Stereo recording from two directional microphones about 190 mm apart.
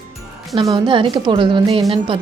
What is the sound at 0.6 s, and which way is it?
A woman's voice, 25° right (ahead or behind).